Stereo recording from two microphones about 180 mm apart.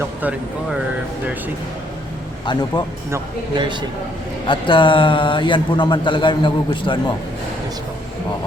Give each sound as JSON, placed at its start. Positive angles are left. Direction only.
{"t": 2.5, "sound": "a man's voice", "side_deg": 25}
{"t": 3.1, "sound": "a man's voice", "side_deg": -25}
{"t": 4.4, "sound": "a man's voice", "side_deg": 25}